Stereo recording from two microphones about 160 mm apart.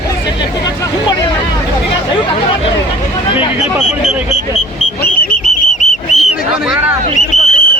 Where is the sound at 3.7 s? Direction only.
5° right (ahead or behind).